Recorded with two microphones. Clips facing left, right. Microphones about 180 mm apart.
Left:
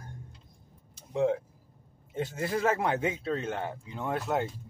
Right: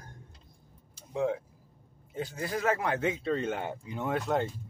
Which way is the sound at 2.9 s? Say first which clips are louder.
Right 1 dB; 5° left (ahead or behind).